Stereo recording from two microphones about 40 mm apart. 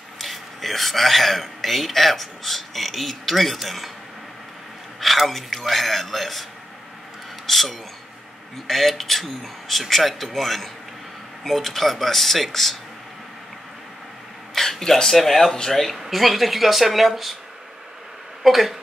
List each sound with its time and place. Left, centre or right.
0.2 s speech: centre
5.0 s speech: centre
7.4 s speech: centre
14.5 s speech: centre
15.8 s speech: centre
18.4 s speech: centre